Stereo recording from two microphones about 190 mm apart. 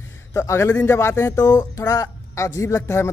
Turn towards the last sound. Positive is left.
turn(degrees=15)  # may be behind; listen again after turning